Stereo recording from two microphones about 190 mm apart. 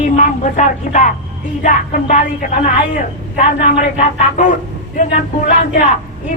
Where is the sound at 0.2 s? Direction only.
40° left (ahead or behind).